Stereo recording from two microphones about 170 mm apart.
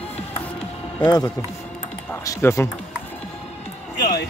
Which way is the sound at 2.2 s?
20° left (ahead or behind).